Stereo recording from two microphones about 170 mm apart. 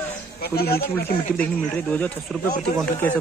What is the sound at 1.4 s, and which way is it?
Speech, 10° left (ahead or behind).